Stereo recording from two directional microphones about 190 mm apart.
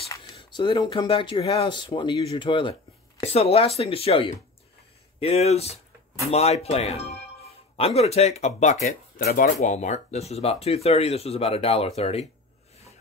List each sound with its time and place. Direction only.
0.2 s speech: 25° left (ahead or behind)
9.2 s speech: 50° left (ahead or behind); by 12.3 s 35° left (ahead or behind)